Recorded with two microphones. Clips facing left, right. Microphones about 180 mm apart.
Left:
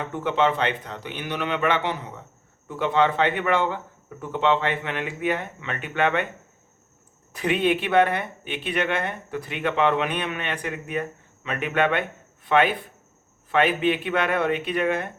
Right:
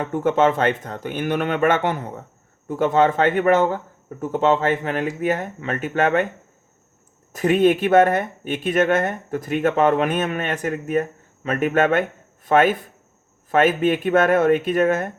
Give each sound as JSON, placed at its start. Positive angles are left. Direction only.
{"t": 0.0, "sound": "speech", "side_deg": -45}
{"t": 7.3, "sound": "speech", "side_deg": -45}